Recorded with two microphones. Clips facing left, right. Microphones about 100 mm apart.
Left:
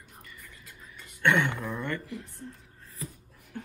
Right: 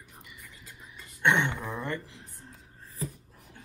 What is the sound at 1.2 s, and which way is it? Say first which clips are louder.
Speech: left 1 dB; 25° right (ahead or behind).